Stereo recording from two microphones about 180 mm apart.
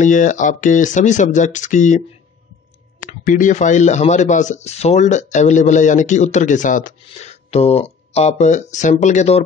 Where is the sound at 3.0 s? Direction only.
45° left (ahead or behind).